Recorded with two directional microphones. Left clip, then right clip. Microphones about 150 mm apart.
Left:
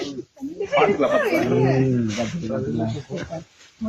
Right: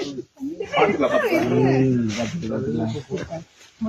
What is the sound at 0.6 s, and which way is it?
A woman's voice, 10° left (ahead or behind).